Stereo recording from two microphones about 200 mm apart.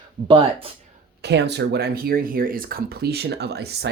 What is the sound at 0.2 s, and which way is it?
Speech, 55° right (ahead or behind).